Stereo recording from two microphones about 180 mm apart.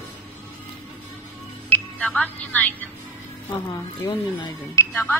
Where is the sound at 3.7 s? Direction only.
20° left (ahead or behind).